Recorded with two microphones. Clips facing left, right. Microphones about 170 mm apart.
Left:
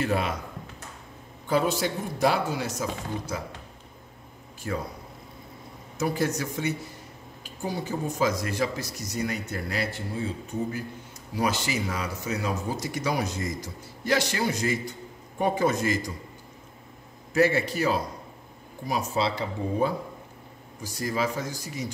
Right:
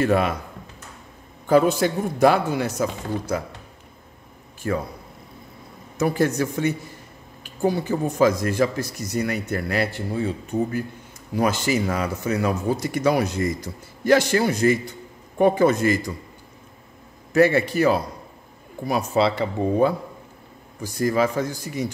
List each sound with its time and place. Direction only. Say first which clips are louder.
0.0 s a man's voice: right 7 dB; 55° right (ahead or behind)
1.5 s a man's voice: right 7 dB; 50° right (ahead or behind)
4.6 s a man's voice: right 6 dB; 60° right (ahead or behind)
5.9 s a man's voice: right 6 dB; 60° right (ahead or behind)
11.3 s a man's voice: right 6 dB; 50° right (ahead or behind)
17.3 s a man's voice: right 5 dB; 60° right (ahead or behind)
19.6 s speech: right 9 dB; 70° right (ahead or behind)
20.8 s a man's voice: right 7 dB; 55° right (ahead or behind)